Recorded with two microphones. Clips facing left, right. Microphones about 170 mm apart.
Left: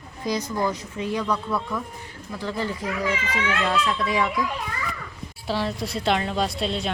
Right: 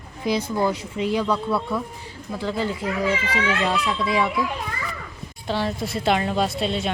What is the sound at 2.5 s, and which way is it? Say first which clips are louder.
Speech: right 2 dB; 25° right (ahead or behind).